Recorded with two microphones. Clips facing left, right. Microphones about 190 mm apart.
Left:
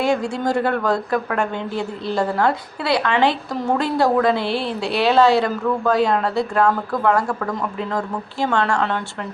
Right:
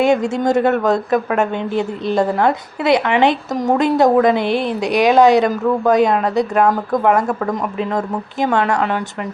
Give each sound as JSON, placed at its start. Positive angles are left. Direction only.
{"t": 0.0, "sound": "a woman's voice", "side_deg": -20}